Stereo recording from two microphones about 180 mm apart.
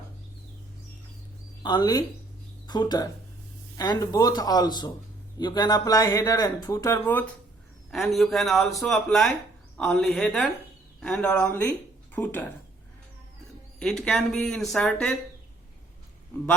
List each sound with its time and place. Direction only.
1.6 s a man's voice: 25° left (ahead or behind)
13.7 s a man's voice: 5° left (ahead or behind)